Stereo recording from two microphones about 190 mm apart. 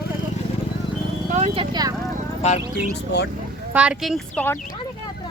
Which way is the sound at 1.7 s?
20° right (ahead or behind).